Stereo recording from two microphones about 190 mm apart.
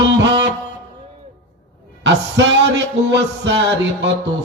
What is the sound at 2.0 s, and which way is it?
Music, 65° right (ahead or behind).